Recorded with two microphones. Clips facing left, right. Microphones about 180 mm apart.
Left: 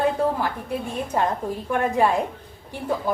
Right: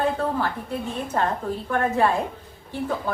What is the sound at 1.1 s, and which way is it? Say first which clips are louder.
A woman's voice: left 1 dB; 15° left (ahead or behind).